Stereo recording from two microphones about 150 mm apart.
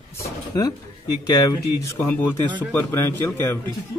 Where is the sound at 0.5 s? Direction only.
25° left (ahead or behind).